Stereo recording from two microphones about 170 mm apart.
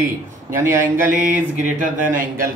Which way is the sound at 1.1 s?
45° right (ahead or behind).